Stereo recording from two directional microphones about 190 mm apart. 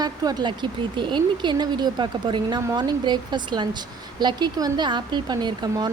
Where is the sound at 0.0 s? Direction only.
20° right (ahead or behind).